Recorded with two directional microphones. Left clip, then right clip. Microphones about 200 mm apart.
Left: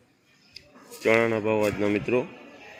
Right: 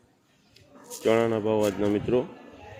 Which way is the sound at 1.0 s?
5° right (ahead or behind).